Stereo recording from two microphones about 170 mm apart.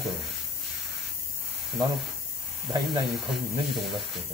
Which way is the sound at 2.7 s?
25° right (ahead or behind).